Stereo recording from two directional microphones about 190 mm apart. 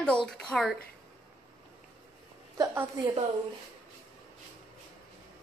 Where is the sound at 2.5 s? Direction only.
15° right (ahead or behind).